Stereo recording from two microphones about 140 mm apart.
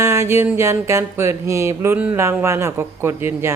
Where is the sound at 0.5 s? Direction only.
20° right (ahead or behind).